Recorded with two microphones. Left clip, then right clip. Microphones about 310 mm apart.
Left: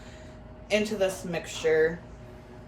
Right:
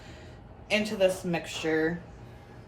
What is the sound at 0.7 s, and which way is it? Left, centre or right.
A woman's voice, centre.